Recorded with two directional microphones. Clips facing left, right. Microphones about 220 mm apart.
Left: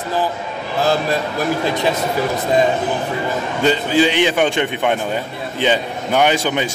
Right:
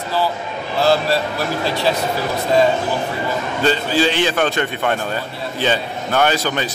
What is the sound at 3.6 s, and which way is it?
A man's voice, 15° left (ahead or behind).